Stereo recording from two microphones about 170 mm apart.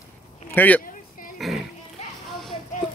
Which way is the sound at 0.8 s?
55° left (ahead or behind).